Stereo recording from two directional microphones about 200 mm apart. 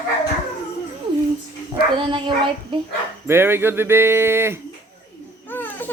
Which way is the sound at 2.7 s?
25° right (ahead or behind).